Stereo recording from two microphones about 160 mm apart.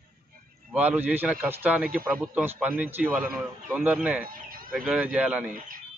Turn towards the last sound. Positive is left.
turn(degrees=-60)  # may be behind; listen again after turning